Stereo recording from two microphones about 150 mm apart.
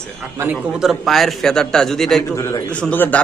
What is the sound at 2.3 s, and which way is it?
Speech, 20° left (ahead or behind).